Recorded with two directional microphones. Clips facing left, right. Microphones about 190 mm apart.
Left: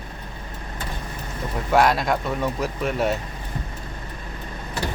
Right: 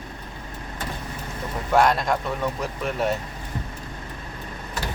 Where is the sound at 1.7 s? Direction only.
5° left (ahead or behind).